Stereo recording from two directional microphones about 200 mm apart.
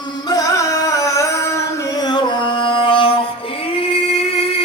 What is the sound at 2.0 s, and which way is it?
Music, 20° left (ahead or behind).